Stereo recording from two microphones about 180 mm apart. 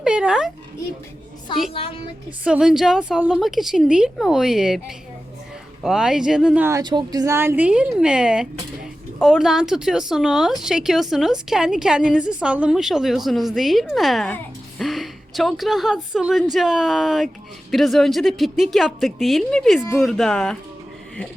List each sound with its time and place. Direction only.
0.0 s speech: 5° right (ahead or behind)
1.7 s a woman's voice: 30° left (ahead or behind)
2.4 s speech: 5° right (ahead or behind)
5.8 s speech: centre (ahead or behind)